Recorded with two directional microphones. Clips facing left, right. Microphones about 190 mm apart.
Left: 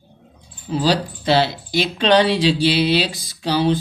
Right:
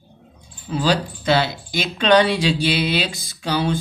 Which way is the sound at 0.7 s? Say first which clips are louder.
Left 1 dB; 35° left (ahead or behind).